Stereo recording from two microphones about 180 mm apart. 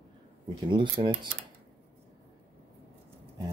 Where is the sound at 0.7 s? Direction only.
25° right (ahead or behind).